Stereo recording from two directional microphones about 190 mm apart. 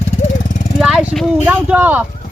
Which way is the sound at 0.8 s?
Centre (ahead or behind).